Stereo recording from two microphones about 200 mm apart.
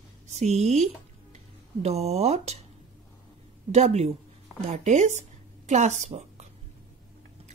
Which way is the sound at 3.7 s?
35° right (ahead or behind).